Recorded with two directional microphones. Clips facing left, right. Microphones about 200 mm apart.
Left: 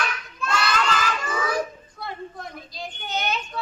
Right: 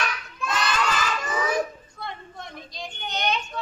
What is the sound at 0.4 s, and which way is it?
Children playing, 20° right (ahead or behind).